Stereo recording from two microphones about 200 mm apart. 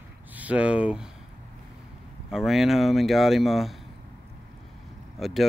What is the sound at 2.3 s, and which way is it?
Speech, centre (ahead or behind).